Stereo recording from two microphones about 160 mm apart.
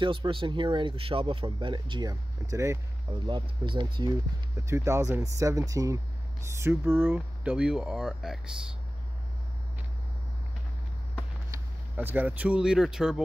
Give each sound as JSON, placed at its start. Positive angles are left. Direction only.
{"t": 0.0, "sound": "speech", "side_deg": -30}
{"t": 3.3, "sound": "speech", "side_deg": -30}
{"t": 4.6, "sound": "speech", "side_deg": -20}
{"t": 11.5, "sound": "speech", "side_deg": -10}